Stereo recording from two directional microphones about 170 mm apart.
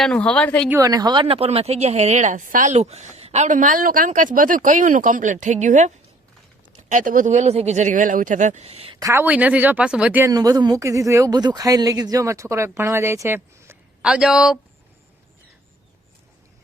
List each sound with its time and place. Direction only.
0.0 s a woman's voice: 5° left (ahead or behind)
0.7 s a woman's voice: 20° right (ahead or behind); by 9.0 s 35° right (ahead or behind)
9.0 s speech: 15° right (ahead or behind)